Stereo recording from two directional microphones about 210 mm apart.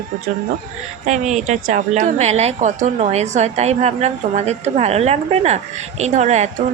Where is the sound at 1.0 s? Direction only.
35° right (ahead or behind).